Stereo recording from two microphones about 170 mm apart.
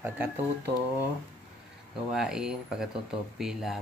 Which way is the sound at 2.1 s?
5° right (ahead or behind).